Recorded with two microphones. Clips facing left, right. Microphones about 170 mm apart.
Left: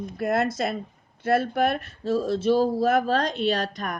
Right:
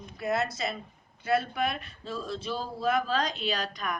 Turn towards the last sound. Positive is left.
turn(degrees=50)  # may be behind; listen again after turning